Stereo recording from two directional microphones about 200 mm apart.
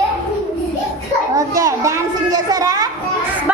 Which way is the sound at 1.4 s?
15° right (ahead or behind).